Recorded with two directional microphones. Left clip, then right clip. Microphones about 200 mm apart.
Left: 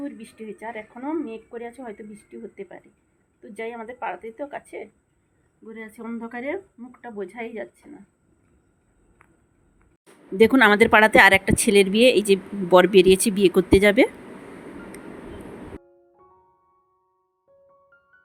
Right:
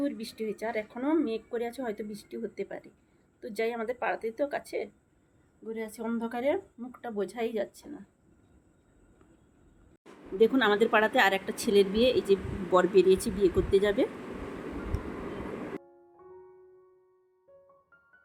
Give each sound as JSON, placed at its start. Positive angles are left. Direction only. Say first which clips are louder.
{"t": 0.0, "sound": "speech", "louder": "right 2 dB", "side_deg": -15}
{"t": 10.3, "sound": "a woman's voice", "louder": "left 9 dB", "side_deg": 45}